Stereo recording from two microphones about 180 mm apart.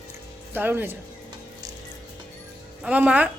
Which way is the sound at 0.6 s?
10° right (ahead or behind).